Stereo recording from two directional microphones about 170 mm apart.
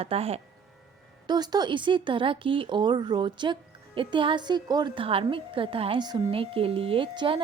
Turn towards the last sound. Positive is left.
turn(degrees=-30)  # may be behind; listen again after turning